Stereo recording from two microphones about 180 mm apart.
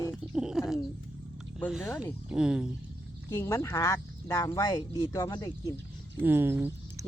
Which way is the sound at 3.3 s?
15° left (ahead or behind).